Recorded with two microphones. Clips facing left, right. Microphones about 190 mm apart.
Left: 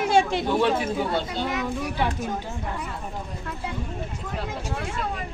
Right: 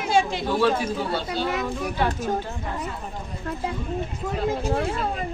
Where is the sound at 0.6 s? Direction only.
20° left (ahead or behind).